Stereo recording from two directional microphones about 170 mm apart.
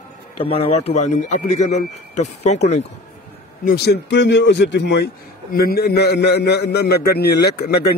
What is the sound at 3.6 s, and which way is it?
Speech, 70° left (ahead or behind).